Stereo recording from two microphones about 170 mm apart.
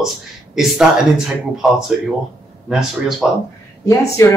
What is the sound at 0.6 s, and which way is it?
Speech, 5° right (ahead or behind).